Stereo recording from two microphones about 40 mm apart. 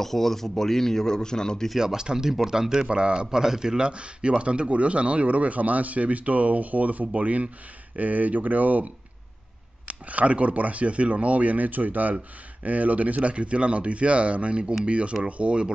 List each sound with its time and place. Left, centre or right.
0.0 s speech: centre
1.8 s speech: centre
2.9 s speech: right
3.3 s speech: centre